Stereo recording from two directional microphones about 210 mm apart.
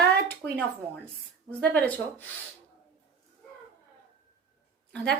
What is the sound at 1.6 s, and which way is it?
Speech, 5° left (ahead or behind).